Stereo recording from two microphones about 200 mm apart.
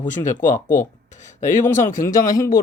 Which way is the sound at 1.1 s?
35° left (ahead or behind).